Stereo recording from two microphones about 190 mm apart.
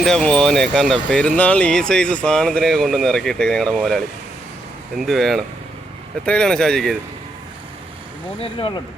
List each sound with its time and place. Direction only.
0.0 s speech: 5° left (ahead or behind)
8.4 s speech: 25° left (ahead or behind)